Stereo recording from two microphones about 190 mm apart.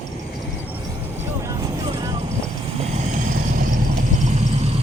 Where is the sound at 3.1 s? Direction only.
45° right (ahead or behind).